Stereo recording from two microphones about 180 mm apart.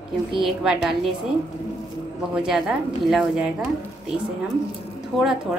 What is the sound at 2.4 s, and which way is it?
A woman's voice, centre (ahead or behind).